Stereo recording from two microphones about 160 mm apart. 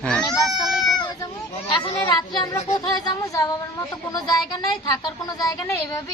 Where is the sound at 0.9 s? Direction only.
25° left (ahead or behind).